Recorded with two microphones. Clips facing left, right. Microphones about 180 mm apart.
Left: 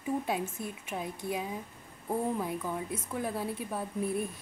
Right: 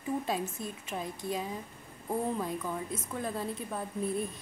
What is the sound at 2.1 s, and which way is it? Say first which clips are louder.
A woman's voice: left 1 dB; 5° left (ahead or behind).